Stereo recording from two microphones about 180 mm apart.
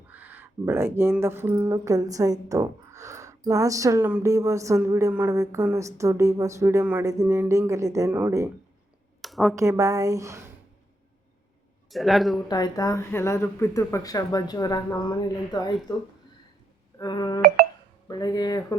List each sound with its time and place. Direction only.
0.1 s speech: 10° right (ahead or behind)
9.2 s a sound: centre (ahead or behind)
9.6 s speech: 15° right (ahead or behind)
11.9 s a man's voice: centre (ahead or behind)
12.5 s speech: 20° left (ahead or behind)
17.0 s speech: 25° left (ahead or behind)